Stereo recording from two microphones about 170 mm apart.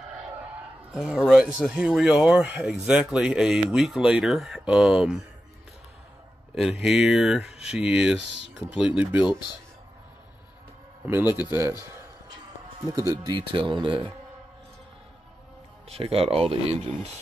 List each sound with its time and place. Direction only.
0.9 s speech: 5° right (ahead or behind)
6.5 s speech: centre (ahead or behind)
11.1 s a man's voice: 10° right (ahead or behind)
12.9 s speech: 20° right (ahead or behind)
15.9 s speech: 35° right (ahead or behind)